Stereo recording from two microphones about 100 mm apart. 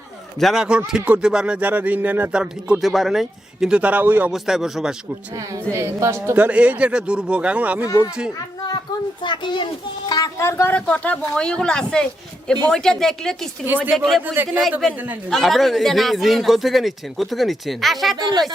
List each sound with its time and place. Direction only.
0.3 s a man's voice: centre (ahead or behind); by 4.3 s 15° right (ahead or behind)
4.3 s a man's voice: 5° right (ahead or behind)
5.3 s speech: 35° right (ahead or behind); by 7.9 s 15° right (ahead or behind)
7.9 s speech: 35° left (ahead or behind)
9.2 s a child's voice: 50° left (ahead or behind)
10.1 s speech: 40° left (ahead or behind)
10.3 s speech: 25° left (ahead or behind)
10.8 s a man's voice: 15° left (ahead or behind)
14.4 s speech: 20° right (ahead or behind)
15.3 s a man's voice: centre (ahead or behind)
18.2 s speech: 45° right (ahead or behind)